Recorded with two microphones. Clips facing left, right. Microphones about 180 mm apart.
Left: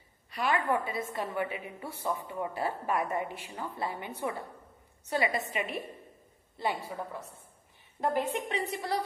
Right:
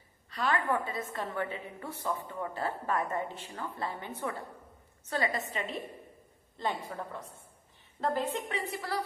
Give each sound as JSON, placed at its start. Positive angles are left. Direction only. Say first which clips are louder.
{"t": 0.3, "sound": "a woman's voice", "louder": "left 1 dB", "side_deg": 10}